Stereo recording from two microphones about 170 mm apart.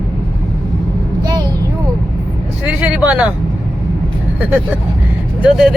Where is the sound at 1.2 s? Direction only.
25° right (ahead or behind).